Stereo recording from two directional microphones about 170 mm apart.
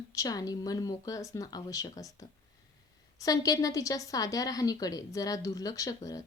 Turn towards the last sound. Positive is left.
turn(degrees=20)  # may be behind; listen again after turning